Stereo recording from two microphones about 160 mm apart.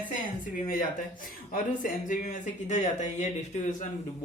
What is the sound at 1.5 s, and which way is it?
A man's voice, 55° left (ahead or behind).